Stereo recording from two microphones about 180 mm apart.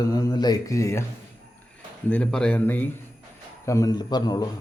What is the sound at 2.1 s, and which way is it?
A man's voice, 5° left (ahead or behind).